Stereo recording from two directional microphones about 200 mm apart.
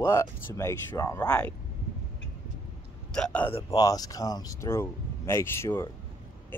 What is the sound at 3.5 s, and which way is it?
Speech, 20° left (ahead or behind).